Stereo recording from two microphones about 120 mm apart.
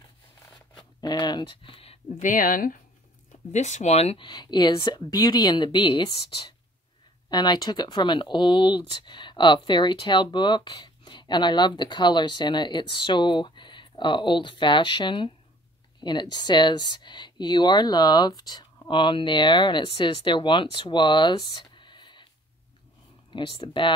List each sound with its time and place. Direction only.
1.0 s speech: 35° left (ahead or behind); by 2.2 s 55° left (ahead or behind)
2.2 s speech: 90° left
3.5 s speech: 75° left (ahead or behind); by 4.3 s 60° left (ahead or behind)
4.3 s speech: 40° left (ahead or behind)
21.7 s a sound: 40° left (ahead or behind)
23.3 s speech: 40° left (ahead or behind)